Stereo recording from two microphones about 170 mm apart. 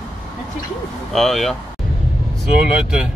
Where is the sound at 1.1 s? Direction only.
Centre (ahead or behind).